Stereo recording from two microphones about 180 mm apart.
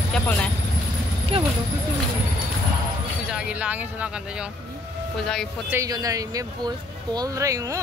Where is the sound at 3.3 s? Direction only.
5° right (ahead or behind).